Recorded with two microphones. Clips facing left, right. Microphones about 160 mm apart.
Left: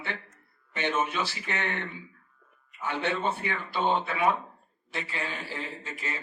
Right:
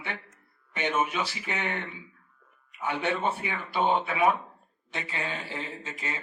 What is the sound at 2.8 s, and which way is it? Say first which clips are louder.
A man's voice: right 1 dB; 15° right (ahead or behind).